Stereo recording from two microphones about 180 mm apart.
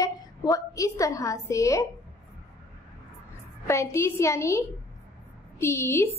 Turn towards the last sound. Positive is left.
turn(degrees=15)  # may be behind; listen again after turning